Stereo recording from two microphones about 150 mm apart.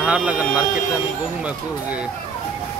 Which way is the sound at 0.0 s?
5° right (ahead or behind).